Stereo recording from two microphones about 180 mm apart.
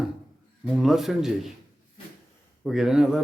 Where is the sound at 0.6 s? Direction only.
Centre (ahead or behind).